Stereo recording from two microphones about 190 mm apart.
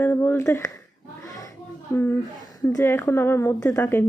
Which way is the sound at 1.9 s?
10° left (ahead or behind).